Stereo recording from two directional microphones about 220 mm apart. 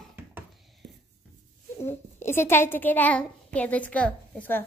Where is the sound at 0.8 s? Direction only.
50° right (ahead or behind).